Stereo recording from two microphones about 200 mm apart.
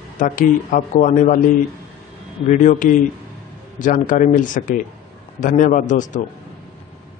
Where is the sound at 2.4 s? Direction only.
40° left (ahead or behind).